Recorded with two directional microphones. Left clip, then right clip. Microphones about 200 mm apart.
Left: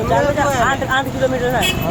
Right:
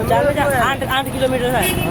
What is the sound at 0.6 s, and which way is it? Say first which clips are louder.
Speech: left 1 dB; 10° right (ahead or behind).